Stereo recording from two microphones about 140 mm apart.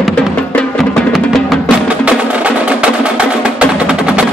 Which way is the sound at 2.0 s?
10° right (ahead or behind).